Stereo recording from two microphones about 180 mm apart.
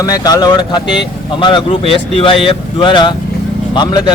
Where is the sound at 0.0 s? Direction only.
20° left (ahead or behind).